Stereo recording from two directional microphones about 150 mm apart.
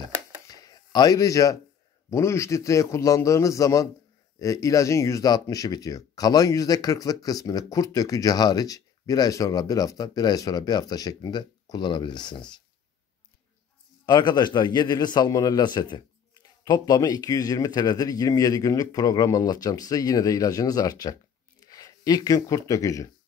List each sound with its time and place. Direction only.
0.5 s a sound: 25° left (ahead or behind)
2.0 s speech: 20° left (ahead or behind)
14.0 s speech: 30° left (ahead or behind)